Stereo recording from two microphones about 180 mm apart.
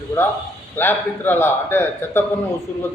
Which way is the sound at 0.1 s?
25° left (ahead or behind).